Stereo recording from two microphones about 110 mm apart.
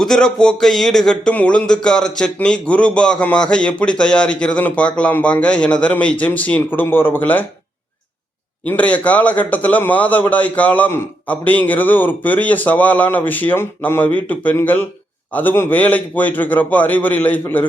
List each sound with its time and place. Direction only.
0.0 s speech: 5° left (ahead or behind)
8.6 s speech: 15° left (ahead or behind)